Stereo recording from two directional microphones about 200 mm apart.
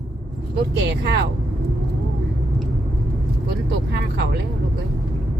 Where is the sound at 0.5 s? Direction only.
60° right (ahead or behind).